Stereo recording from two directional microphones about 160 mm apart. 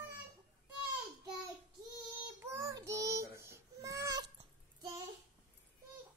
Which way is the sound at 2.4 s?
15° right (ahead or behind).